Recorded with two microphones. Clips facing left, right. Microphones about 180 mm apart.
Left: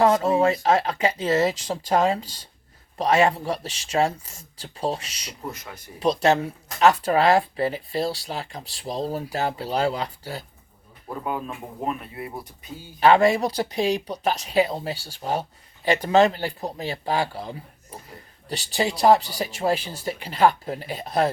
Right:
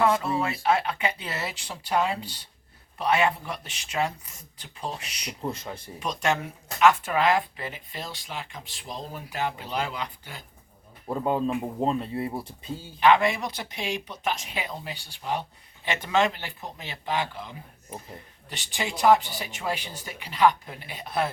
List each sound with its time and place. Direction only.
0.0 s a sound: 40° left (ahead or behind)
0.4 s speech: 40° left (ahead or behind)
5.5 s speech: 30° right (ahead or behind)
6.0 s speech: 35° left (ahead or behind)
11.3 s speech: 25° right (ahead or behind)
13.0 s speech: 40° left (ahead or behind)